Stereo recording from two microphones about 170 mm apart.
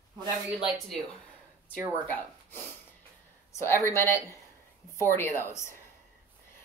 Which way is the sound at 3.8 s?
15° left (ahead or behind).